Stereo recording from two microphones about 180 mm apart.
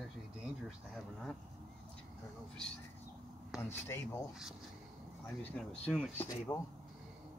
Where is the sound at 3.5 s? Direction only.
15° left (ahead or behind).